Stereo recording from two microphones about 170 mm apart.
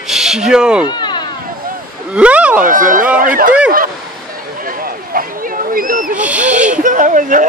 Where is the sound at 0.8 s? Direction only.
25° left (ahead or behind).